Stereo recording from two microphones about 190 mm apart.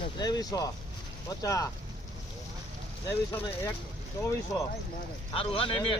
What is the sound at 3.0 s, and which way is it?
Speech, 10° left (ahead or behind).